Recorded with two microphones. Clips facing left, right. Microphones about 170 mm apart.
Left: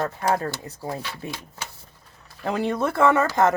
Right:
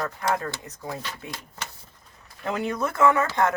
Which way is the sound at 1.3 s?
5° left (ahead or behind).